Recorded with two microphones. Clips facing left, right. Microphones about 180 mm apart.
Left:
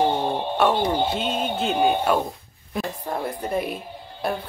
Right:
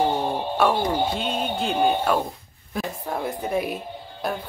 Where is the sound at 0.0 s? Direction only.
5° right (ahead or behind).